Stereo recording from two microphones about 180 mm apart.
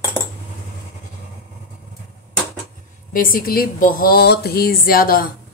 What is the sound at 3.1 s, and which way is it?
Speech, 50° left (ahead or behind).